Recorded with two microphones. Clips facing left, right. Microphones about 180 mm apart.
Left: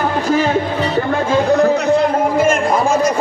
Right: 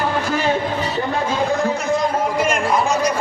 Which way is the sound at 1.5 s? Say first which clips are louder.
Left 7 dB; 70° left (ahead or behind).